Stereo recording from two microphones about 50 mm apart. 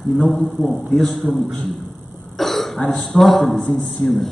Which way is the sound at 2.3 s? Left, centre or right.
Centre.